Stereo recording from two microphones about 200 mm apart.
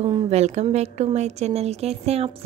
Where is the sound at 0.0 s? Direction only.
30° right (ahead or behind).